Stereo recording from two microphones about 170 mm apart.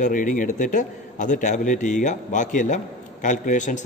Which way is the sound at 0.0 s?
50° left (ahead or behind).